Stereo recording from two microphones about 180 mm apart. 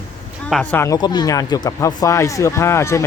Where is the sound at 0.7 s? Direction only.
15° left (ahead or behind).